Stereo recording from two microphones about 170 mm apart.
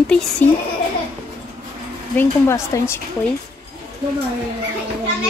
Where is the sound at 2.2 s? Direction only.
15° left (ahead or behind).